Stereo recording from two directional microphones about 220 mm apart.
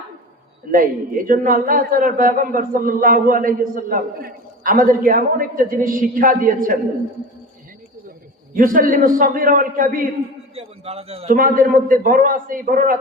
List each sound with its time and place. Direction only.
0.7 s a man's voice: 40° right (ahead or behind)
8.5 s a man's voice: 40° right (ahead or behind)
10.5 s a man's voice: 25° right (ahead or behind)
11.3 s a man's voice: 40° right (ahead or behind)